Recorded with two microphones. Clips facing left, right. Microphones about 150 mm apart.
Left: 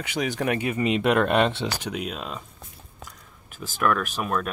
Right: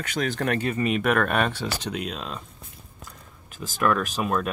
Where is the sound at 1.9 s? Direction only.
5° left (ahead or behind).